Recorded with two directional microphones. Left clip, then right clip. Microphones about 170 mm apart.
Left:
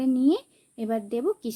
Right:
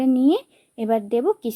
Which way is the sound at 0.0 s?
5° right (ahead or behind).